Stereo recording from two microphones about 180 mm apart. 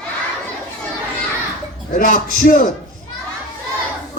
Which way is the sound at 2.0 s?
50° left (ahead or behind).